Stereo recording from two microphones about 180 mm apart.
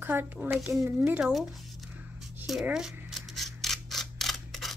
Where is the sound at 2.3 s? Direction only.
5° right (ahead or behind).